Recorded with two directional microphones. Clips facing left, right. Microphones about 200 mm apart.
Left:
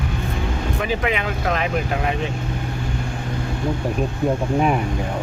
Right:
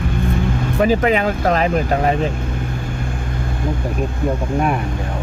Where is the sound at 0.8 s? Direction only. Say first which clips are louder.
Right 9 dB; 40° right (ahead or behind).